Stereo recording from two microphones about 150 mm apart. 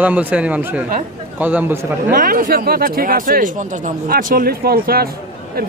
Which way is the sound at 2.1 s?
70° right (ahead or behind).